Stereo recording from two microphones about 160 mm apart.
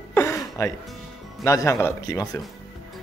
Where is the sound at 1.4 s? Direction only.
20° left (ahead or behind).